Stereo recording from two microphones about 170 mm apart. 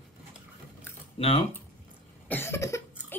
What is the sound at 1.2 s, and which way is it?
Speech, 35° left (ahead or behind).